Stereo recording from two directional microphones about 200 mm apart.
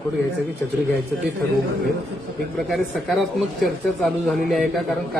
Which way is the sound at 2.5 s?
Centre (ahead or behind).